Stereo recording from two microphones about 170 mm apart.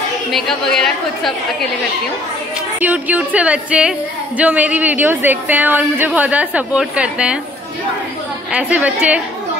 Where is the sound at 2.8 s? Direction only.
10° right (ahead or behind).